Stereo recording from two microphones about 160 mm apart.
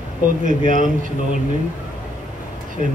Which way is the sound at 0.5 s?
55° right (ahead or behind).